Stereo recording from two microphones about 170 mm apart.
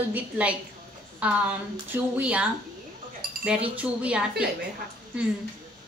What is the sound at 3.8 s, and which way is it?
Speech, 5° right (ahead or behind).